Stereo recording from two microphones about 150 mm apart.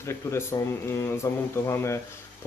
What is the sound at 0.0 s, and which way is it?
Speech, 20° left (ahead or behind).